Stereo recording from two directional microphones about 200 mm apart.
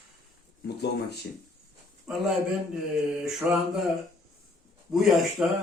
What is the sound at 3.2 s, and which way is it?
Mantra, centre (ahead or behind).